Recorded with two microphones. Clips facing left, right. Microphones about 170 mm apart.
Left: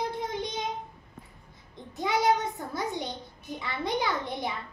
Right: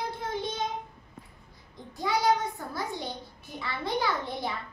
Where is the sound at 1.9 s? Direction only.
20° left (ahead or behind).